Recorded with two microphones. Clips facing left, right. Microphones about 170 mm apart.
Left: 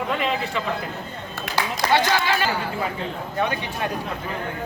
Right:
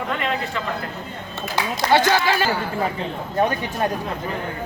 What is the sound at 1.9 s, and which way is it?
Speech, 35° right (ahead or behind).